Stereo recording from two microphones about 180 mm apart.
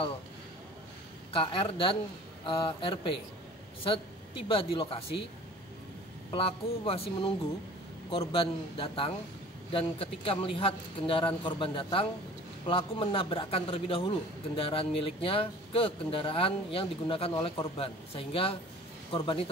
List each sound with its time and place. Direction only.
1.3 s a man's voice: 30° left (ahead or behind)
6.3 s speech: 30° left (ahead or behind)